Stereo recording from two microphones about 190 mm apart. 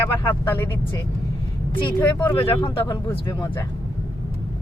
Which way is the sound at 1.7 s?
10° left (ahead or behind).